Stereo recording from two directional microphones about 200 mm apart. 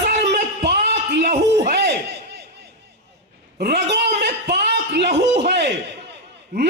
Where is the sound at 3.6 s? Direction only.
55° right (ahead or behind).